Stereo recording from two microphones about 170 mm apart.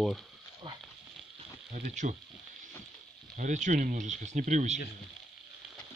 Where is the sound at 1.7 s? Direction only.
45° right (ahead or behind).